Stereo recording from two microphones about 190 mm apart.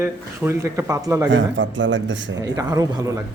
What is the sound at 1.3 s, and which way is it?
Speech, 75° right (ahead or behind).